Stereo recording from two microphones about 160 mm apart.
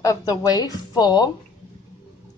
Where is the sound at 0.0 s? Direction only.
20° left (ahead or behind).